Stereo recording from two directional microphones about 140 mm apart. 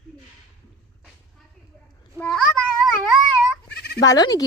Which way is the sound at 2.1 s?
5° left (ahead or behind).